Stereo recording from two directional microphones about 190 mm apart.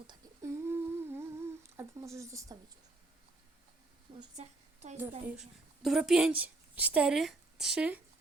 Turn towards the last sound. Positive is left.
turn(degrees=-5)  # may be behind; listen again after turning